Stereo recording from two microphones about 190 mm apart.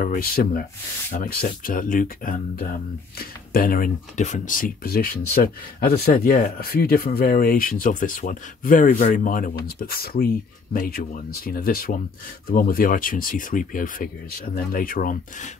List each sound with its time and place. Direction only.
0.0 s speech: 50° left (ahead or behind)